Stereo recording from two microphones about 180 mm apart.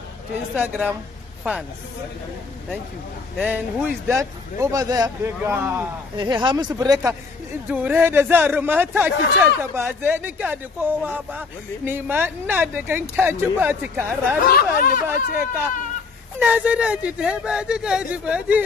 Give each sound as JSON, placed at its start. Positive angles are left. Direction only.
{"t": 0.6, "sound": "speech", "side_deg": -10}
{"t": 3.4, "sound": "speech", "side_deg": -10}
{"t": 6.1, "sound": "speech", "side_deg": -25}
{"t": 7.7, "sound": "speech", "side_deg": -10}
{"t": 14.4, "sound": "speech", "side_deg": 50}
{"t": 15.0, "sound": "speech", "side_deg": -10}